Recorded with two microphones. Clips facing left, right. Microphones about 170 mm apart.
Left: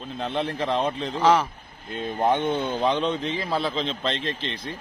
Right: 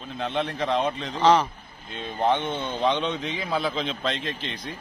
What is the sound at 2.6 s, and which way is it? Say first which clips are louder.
A man's voice: left 1 dB; centre (ahead or behind).